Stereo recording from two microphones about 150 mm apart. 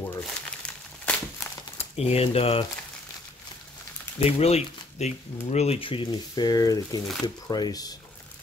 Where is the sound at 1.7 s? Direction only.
45° left (ahead or behind).